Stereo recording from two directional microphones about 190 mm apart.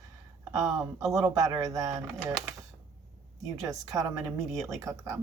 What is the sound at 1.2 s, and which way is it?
Speech, 20° right (ahead or behind).